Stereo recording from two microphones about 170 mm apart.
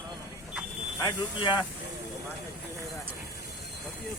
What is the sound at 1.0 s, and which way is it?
Speech, 25° left (ahead or behind).